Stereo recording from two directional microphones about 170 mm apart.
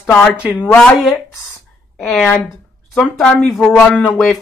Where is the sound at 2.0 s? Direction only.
Centre (ahead or behind).